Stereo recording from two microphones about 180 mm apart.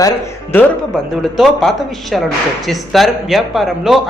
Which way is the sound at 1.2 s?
Centre (ahead or behind).